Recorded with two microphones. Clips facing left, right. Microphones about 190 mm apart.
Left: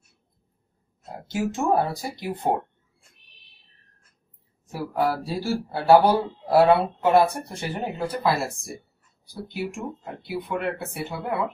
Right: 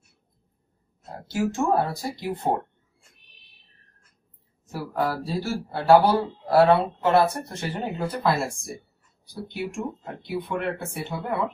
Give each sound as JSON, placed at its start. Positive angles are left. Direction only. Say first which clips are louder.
{"t": 1.2, "sound": "speech", "louder": "right 1 dB", "side_deg": 20}
{"t": 4.9, "sound": "speech", "louder": "left 1 dB", "side_deg": 10}